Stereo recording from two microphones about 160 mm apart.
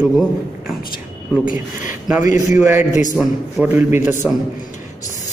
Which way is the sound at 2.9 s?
50° left (ahead or behind).